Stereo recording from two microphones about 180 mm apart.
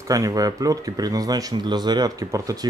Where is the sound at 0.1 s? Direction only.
20° right (ahead or behind).